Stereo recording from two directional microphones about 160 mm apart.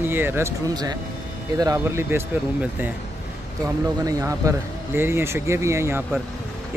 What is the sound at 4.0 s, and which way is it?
Speech, 20° right (ahead or behind).